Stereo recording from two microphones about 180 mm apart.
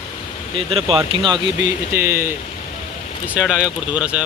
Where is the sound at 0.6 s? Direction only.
30° right (ahead or behind).